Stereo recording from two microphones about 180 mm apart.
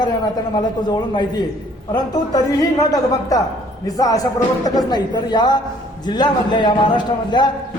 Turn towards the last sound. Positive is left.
turn(degrees=25)  # may be behind; listen again after turning